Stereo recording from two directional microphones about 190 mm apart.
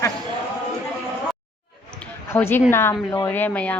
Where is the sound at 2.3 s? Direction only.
10° left (ahead or behind).